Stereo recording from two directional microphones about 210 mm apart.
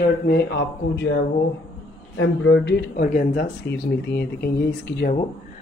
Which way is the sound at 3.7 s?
50° left (ahead or behind).